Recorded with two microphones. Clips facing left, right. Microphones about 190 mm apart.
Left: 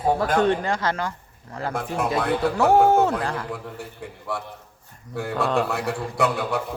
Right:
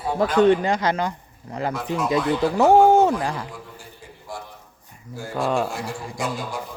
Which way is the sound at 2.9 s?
15° right (ahead or behind).